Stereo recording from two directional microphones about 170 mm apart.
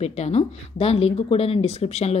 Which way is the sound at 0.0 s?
40° left (ahead or behind).